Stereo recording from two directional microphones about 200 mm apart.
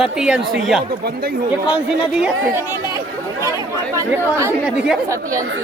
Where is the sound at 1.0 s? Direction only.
50° right (ahead or behind).